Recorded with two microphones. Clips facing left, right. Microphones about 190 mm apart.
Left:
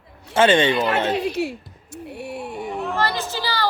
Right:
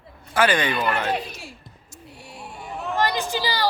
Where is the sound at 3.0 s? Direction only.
15° right (ahead or behind).